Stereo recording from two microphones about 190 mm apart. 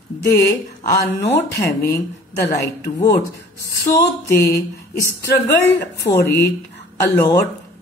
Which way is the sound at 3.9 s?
15° left (ahead or behind).